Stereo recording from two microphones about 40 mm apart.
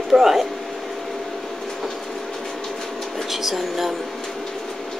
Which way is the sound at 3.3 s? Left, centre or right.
Centre.